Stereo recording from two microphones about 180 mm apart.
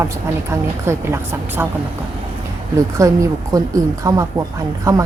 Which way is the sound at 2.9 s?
15° right (ahead or behind).